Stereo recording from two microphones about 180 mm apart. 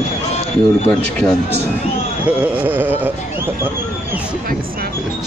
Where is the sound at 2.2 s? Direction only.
5° right (ahead or behind).